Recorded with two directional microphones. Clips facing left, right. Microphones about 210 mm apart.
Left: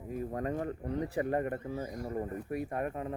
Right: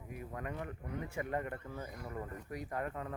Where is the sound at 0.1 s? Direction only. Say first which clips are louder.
Left 9 dB; 35° left (ahead or behind).